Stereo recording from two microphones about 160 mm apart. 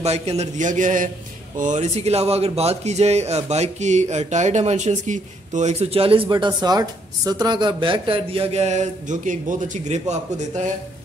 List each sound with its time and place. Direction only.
0.0 s a man's voice: 40° right (ahead or behind)